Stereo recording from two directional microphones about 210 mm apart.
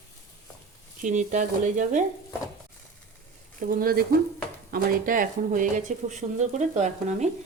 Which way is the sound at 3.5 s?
40° right (ahead or behind).